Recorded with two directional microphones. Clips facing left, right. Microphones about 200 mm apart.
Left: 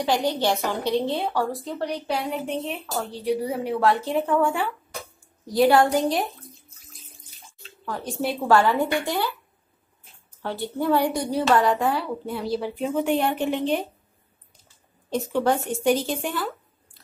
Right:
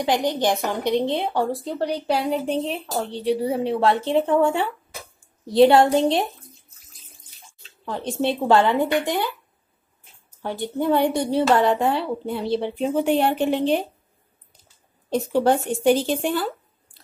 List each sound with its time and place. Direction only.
0.0 s a woman's voice: 15° right (ahead or behind)
6.4 s water: centre (ahead or behind)
7.8 s a woman's voice: 25° right (ahead or behind)
10.4 s a woman's voice: 15° right (ahead or behind); by 13.8 s 30° right (ahead or behind)
15.0 s speech: 30° right (ahead or behind)